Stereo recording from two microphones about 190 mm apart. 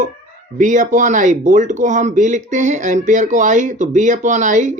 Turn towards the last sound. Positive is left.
turn(degrees=-40)  # may be behind; listen again after turning